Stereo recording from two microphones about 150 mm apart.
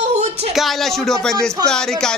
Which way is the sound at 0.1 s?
50° right (ahead or behind).